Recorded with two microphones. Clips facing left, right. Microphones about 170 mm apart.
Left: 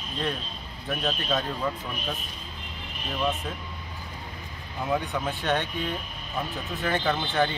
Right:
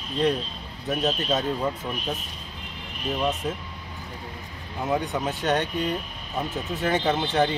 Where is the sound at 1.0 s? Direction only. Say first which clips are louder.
Right 3 dB; 25° right (ahead or behind).